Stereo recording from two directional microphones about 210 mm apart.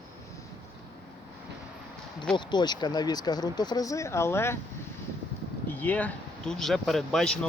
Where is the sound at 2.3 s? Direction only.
20° left (ahead or behind).